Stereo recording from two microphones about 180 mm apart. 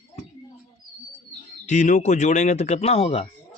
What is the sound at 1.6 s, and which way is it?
Speech, 45° left (ahead or behind).